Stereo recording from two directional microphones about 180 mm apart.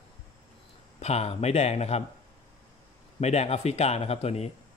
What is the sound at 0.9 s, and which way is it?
Speech, 35° left (ahead or behind).